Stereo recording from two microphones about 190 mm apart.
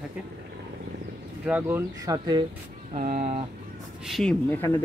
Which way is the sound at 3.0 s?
45° right (ahead or behind).